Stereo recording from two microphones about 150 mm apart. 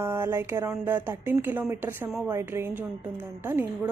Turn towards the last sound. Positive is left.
turn(degrees=-15)  # may be behind; listen again after turning